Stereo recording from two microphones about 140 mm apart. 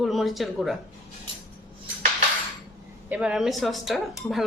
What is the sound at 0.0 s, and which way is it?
Speech, centre (ahead or behind).